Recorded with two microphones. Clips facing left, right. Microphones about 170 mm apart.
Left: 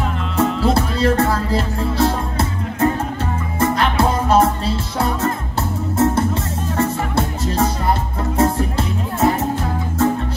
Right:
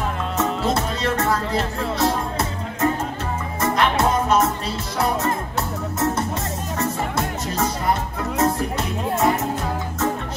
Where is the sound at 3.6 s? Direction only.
30° left (ahead or behind).